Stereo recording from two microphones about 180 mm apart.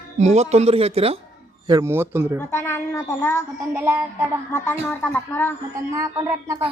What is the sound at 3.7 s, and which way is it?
Speech, 15° right (ahead or behind).